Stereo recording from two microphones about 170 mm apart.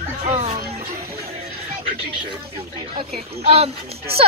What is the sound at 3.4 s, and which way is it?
Speech, 35° right (ahead or behind).